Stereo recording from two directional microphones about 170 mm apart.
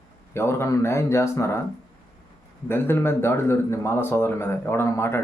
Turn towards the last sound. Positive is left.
turn(degrees=15)  # may be behind; listen again after turning